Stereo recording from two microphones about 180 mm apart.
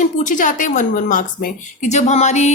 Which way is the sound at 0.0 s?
45° left (ahead or behind).